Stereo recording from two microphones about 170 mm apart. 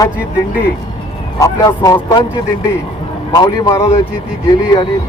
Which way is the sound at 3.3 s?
20° left (ahead or behind).